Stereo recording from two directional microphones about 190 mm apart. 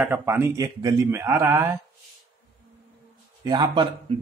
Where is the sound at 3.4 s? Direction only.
25° right (ahead or behind).